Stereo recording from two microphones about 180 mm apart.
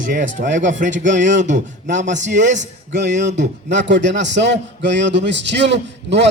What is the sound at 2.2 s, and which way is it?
A man's voice, 75° right (ahead or behind).